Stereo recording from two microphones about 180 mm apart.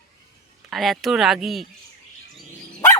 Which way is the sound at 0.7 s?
Centre (ahead or behind).